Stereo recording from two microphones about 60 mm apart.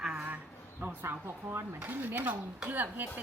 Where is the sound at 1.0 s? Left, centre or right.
Right.